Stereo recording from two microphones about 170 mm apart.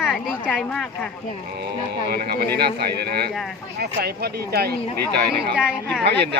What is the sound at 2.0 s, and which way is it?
Speech, 65° right (ahead or behind).